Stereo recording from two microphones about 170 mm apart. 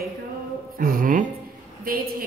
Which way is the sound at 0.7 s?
55° right (ahead or behind).